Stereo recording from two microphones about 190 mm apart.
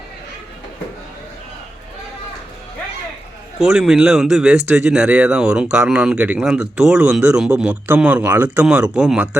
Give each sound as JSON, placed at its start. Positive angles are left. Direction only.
{"t": 3.6, "sound": "speech", "side_deg": -5}